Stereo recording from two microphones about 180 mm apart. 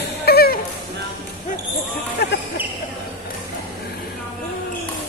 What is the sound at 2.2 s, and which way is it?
Music, 65° left (ahead or behind).